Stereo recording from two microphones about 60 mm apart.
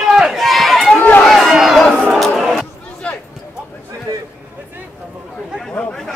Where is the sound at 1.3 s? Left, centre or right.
Centre.